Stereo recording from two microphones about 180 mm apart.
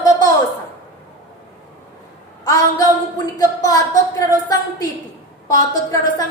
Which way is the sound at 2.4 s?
20° left (ahead or behind).